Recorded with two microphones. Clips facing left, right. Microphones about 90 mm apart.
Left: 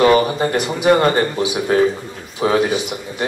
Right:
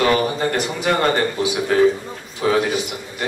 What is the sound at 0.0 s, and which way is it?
A man's voice, 20° left (ahead or behind).